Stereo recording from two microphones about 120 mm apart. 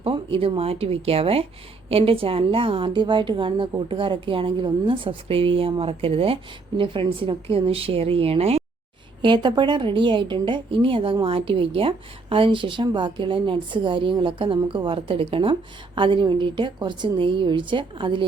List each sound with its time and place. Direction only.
0.0 s a woman's voice: 50° right (ahead or behind)
9.2 s a woman's voice: 40° right (ahead or behind)